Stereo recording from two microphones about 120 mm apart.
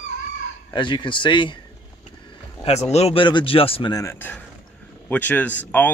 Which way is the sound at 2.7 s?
65° left (ahead or behind).